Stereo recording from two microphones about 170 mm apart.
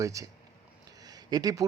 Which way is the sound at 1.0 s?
25° right (ahead or behind).